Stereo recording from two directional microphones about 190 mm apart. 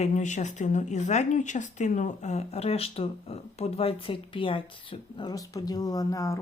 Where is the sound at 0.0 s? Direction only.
40° left (ahead or behind).